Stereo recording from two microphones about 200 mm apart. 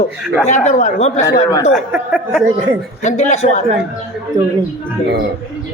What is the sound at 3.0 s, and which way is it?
Speech, 35° left (ahead or behind).